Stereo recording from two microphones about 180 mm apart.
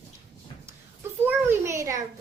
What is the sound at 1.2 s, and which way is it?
Speech, 15° right (ahead or behind).